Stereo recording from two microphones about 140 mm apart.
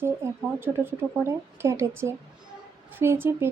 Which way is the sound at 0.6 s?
15° right (ahead or behind).